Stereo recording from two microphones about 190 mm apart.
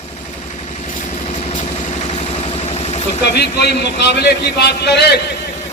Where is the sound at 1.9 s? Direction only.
35° left (ahead or behind).